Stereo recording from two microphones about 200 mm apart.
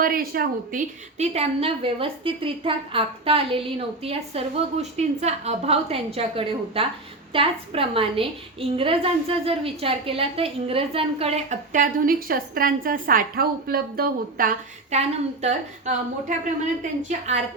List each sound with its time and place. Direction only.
0.0 s a woman's voice: 45° right (ahead or behind)
17.0 s a woman's voice: 35° right (ahead or behind)